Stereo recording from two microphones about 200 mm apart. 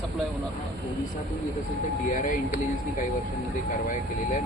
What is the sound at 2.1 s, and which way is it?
Speech, 40° left (ahead or behind).